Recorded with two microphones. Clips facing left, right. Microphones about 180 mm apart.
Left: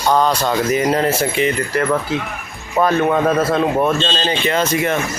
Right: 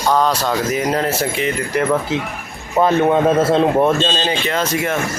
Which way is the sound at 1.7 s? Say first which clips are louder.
Right 1 dB; 20° right (ahead or behind).